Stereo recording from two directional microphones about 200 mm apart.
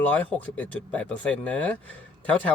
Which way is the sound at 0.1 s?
5° left (ahead or behind).